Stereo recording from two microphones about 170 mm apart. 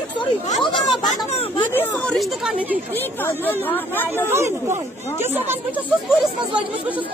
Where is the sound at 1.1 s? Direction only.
35° left (ahead or behind).